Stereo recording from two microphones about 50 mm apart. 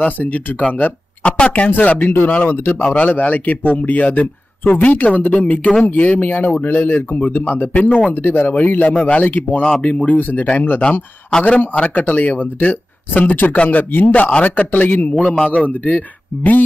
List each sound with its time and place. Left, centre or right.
0.0 s speech: left
2.9 s speech: left
9.8 s speech: left
11.3 s a man's voice: centre
11.7 s speech: left
15.3 s a man's voice: centre
15.6 s speech: left